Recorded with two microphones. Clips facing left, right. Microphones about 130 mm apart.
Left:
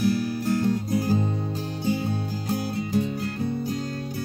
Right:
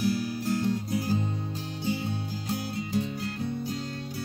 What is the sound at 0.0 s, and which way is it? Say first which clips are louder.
Music: left 4 dB; 50° left (ahead or behind).